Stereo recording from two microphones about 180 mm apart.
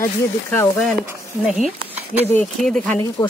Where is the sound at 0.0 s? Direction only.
15° left (ahead or behind).